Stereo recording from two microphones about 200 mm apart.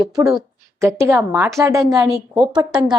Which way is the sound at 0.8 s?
15° right (ahead or behind).